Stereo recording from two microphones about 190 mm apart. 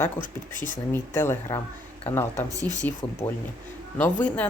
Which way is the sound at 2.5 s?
20° right (ahead or behind).